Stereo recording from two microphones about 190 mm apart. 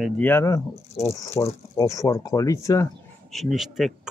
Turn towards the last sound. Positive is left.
turn(degrees=0)  # may be behind; listen again after turning